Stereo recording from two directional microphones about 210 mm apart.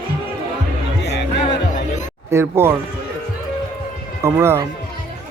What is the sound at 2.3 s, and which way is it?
Speech, 10° right (ahead or behind).